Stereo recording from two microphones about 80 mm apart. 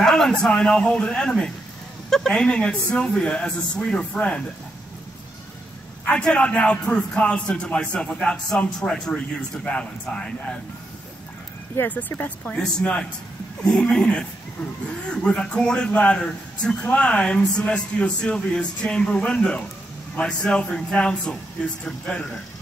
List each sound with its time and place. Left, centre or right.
0.0 s a man's voice: centre
6.0 s a man's voice: centre
11.9 s a man's voice: left